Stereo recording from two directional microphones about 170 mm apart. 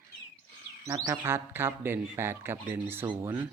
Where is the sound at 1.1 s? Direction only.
15° right (ahead or behind).